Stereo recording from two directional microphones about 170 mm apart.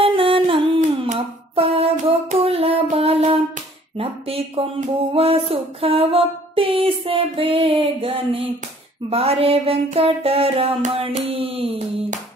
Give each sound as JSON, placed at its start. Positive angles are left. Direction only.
{"t": 0.0, "sound": "humming", "side_deg": -30}
{"t": 1.0, "sound": "a sound", "side_deg": -35}
{"t": 3.9, "sound": "speech", "side_deg": -35}